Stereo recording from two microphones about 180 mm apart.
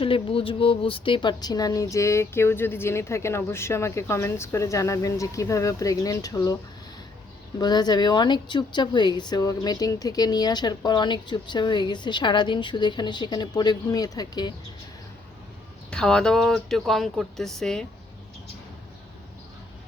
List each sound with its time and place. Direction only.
0.0 s speech: 30° left (ahead or behind)
7.6 s speech: 25° left (ahead or behind)
15.9 s speech: 5° left (ahead or behind)